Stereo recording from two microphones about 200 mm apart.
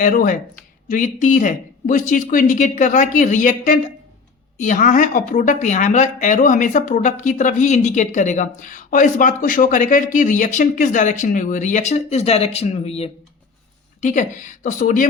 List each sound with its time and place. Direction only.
0.0 s speech: 45° left (ahead or behind)